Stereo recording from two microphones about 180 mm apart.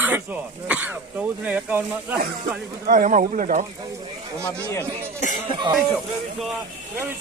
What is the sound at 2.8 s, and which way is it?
Speech, 45° right (ahead or behind).